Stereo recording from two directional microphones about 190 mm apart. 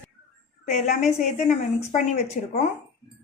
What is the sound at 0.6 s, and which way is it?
A woman's voice, 40° left (ahead or behind).